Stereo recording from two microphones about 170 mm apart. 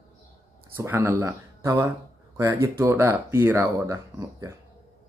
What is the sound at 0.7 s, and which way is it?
Speech, 10° right (ahead or behind).